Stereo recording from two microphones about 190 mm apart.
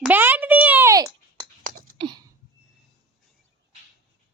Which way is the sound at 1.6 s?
45° right (ahead or behind).